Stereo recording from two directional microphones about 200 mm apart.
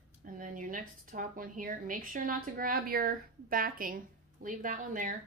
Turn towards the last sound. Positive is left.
turn(degrees=-40)  # may be behind; listen again after turning